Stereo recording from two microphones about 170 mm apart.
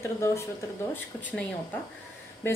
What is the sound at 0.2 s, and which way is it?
A woman's voice, 15° left (ahead or behind).